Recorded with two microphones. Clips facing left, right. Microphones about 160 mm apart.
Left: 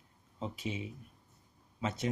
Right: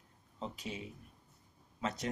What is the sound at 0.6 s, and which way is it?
Speech, 40° right (ahead or behind).